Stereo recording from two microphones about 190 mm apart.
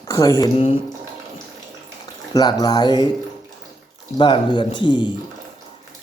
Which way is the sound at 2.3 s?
20° left (ahead or behind).